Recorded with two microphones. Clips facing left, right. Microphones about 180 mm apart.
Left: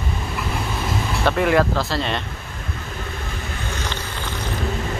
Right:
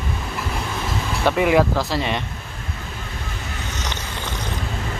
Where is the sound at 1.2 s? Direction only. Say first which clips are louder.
Right 1 dB; 10° right (ahead or behind).